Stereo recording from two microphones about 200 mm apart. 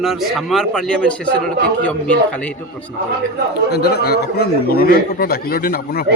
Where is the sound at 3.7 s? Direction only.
55° left (ahead or behind).